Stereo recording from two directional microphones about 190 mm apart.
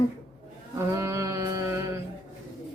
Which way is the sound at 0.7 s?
15° right (ahead or behind).